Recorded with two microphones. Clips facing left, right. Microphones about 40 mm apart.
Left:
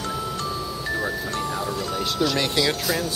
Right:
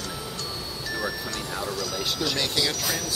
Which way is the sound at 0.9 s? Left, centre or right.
Left.